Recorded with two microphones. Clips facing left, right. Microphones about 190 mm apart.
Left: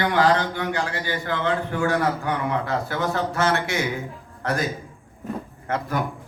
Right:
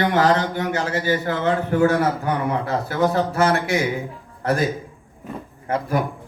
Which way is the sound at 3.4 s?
35° right (ahead or behind).